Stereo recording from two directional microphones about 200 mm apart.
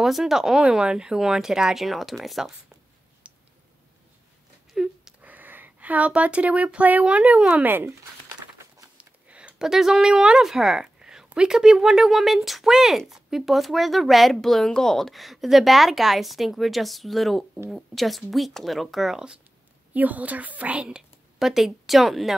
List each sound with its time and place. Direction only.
0.0 s speech: centre (ahead or behind)
3.3 s a sound: 5° right (ahead or behind)
4.7 s speech: 5° right (ahead or behind)